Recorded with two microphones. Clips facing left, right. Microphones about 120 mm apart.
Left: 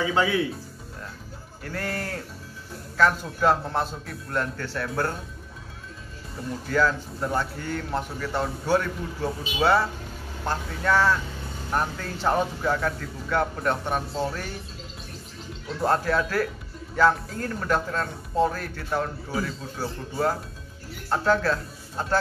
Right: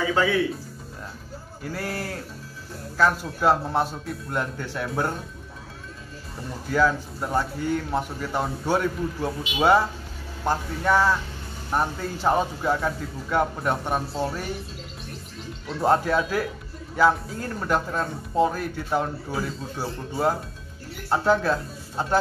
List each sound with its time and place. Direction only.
0.1 s speech: 15° left (ahead or behind)
1.6 s a man's voice: 10° right (ahead or behind)
6.7 s a man's voice: 10° right (ahead or behind)
15.8 s a man's voice: 10° right (ahead or behind)